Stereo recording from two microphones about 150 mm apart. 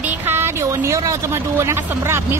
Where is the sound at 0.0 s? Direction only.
15° right (ahead or behind).